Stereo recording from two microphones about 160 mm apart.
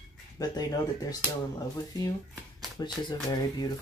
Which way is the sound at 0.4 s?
25° left (ahead or behind).